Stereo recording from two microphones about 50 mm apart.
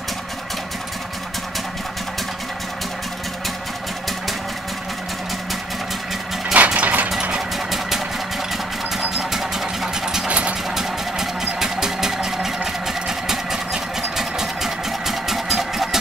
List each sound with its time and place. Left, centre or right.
6.5 s a sound: right
7.5 s engine: centre
9.1 s engine: centre
11.6 s sewing machine: centre
12.8 s engine: centre